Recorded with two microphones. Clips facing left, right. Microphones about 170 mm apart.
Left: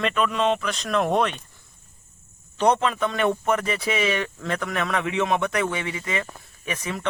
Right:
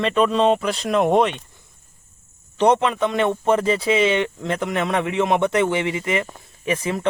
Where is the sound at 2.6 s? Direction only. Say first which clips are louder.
Right 4 dB; 20° right (ahead or behind).